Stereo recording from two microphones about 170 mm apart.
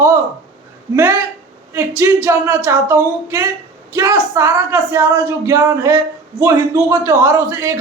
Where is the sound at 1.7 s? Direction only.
15° right (ahead or behind).